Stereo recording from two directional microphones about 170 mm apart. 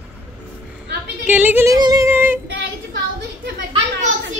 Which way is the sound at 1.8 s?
20° right (ahead or behind).